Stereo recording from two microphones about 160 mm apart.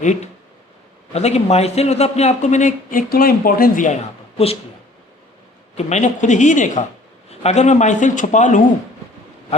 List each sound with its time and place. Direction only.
0.0 s a man's voice: 50° left (ahead or behind)
5.7 s a man's voice: 45° left (ahead or behind)